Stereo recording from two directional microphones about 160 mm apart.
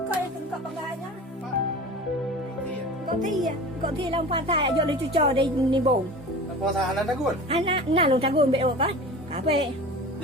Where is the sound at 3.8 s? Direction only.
35° right (ahead or behind).